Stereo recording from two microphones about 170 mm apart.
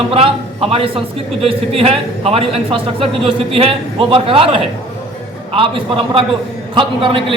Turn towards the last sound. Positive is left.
turn(degrees=-30)  # may be behind; listen again after turning